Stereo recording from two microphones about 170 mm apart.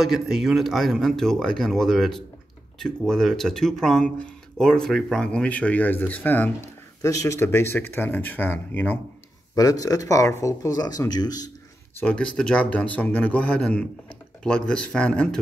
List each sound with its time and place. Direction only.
0.0 s speech: centre (ahead or behind); by 11.5 s 20° left (ahead or behind)
12.0 s speech: 5° left (ahead or behind)